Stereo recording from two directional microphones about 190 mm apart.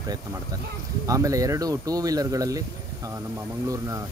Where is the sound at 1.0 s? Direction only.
15° right (ahead or behind).